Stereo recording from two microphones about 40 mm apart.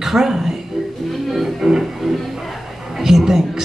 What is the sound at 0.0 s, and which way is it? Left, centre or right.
Speech, centre.